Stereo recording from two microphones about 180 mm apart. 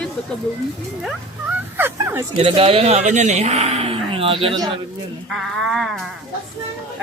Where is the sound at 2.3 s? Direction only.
30° right (ahead or behind).